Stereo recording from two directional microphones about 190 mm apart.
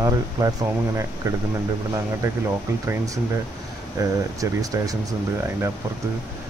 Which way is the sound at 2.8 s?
15° right (ahead or behind).